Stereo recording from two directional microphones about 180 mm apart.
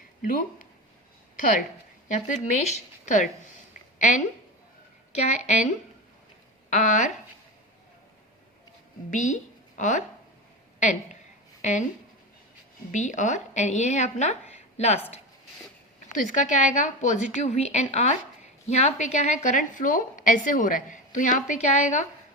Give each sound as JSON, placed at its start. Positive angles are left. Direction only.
{"t": 1.4, "sound": "speech", "side_deg": 45}
{"t": 3.9, "sound": "a sound", "side_deg": 45}
{"t": 6.7, "sound": "a woman's voice", "side_deg": 45}
{"t": 9.0, "sound": "a woman's voice", "side_deg": 45}
{"t": 12.9, "sound": "speech", "side_deg": 45}
{"t": 16.1, "sound": "a woman's voice", "side_deg": 45}